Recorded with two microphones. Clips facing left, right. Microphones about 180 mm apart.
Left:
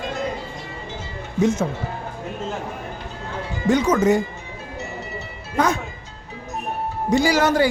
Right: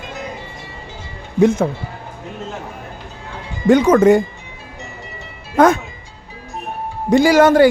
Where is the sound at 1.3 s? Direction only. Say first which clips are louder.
Right 6 dB; 55° right (ahead or behind).